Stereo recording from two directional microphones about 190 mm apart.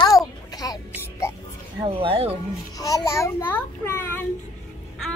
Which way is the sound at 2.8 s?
20° left (ahead or behind).